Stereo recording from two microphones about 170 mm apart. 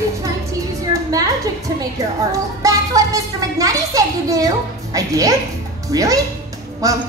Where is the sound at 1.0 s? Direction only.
20° right (ahead or behind).